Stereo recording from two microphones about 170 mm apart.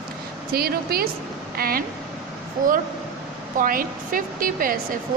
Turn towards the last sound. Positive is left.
turn(degrees=-55)  # may be behind; listen again after turning